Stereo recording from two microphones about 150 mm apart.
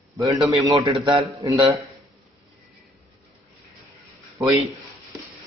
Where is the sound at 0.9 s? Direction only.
40° right (ahead or behind).